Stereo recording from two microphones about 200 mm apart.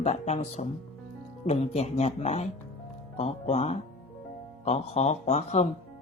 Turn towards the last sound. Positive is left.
turn(degrees=35)  # may be behind; listen again after turning